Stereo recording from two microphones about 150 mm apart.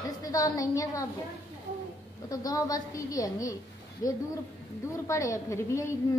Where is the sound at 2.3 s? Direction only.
25° left (ahead or behind).